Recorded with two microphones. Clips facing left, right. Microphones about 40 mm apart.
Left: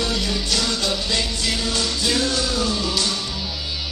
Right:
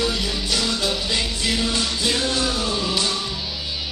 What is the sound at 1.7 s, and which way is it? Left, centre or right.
Music, right.